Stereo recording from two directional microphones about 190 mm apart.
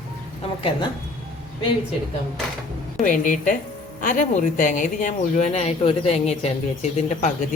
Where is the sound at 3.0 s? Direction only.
45° left (ahead or behind).